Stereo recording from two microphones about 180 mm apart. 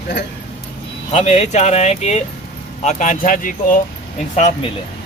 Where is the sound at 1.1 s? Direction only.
35° left (ahead or behind).